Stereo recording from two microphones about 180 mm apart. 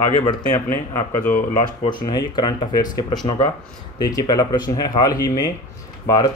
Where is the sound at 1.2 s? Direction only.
50° left (ahead or behind).